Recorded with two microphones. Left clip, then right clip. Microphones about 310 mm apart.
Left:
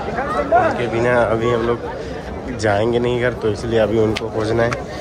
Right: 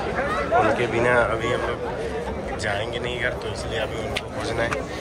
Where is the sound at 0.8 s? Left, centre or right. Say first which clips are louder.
Left 3 dB; centre.